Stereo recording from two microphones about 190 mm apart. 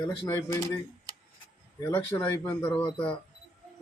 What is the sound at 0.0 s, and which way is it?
Speech, 15° left (ahead or behind).